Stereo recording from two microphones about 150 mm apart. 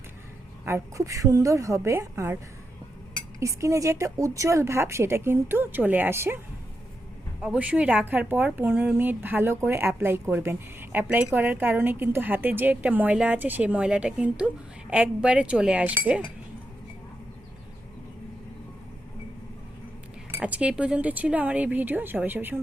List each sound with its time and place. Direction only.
0.6 s a woman's voice: 20° right (ahead or behind)
3.4 s a woman's voice: 20° right (ahead or behind)
7.4 s speech: 5° right (ahead or behind)
20.3 s speech: 10° right (ahead or behind)